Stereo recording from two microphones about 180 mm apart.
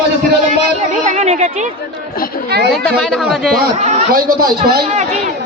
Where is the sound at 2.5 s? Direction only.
65° right (ahead or behind).